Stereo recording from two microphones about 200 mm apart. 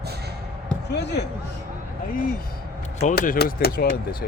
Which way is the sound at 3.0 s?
40° left (ahead or behind).